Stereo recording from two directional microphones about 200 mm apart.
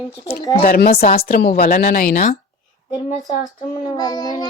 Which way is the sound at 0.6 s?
45° left (ahead or behind).